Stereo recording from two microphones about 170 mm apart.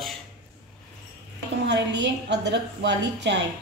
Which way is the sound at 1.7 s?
90° right.